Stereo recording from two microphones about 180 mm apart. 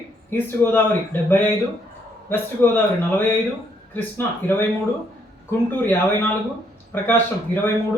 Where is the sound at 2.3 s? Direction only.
10° left (ahead or behind).